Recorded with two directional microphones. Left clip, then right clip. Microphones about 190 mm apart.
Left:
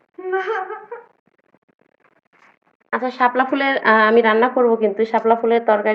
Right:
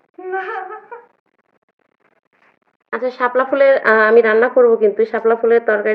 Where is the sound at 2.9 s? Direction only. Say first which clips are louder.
Even; 20° right (ahead or behind).